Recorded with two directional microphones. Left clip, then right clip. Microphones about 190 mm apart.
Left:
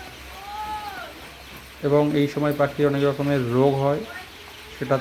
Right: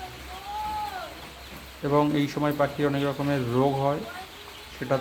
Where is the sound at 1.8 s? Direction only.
10° left (ahead or behind).